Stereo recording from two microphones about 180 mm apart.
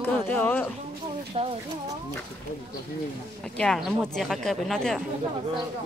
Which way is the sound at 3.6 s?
Centre (ahead or behind).